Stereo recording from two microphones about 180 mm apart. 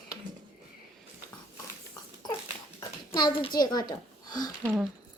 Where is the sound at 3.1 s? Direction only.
25° left (ahead or behind).